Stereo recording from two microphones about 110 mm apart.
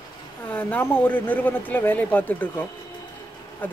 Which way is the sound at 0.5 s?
15° left (ahead or behind).